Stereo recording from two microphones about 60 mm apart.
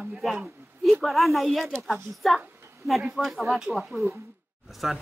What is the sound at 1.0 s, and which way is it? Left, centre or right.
A woman's voice, centre.